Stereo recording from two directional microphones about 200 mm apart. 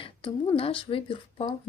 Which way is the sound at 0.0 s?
25° left (ahead or behind).